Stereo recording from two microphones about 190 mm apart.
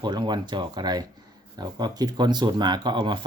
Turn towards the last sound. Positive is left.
turn(degrees=-25)  # may be behind; listen again after turning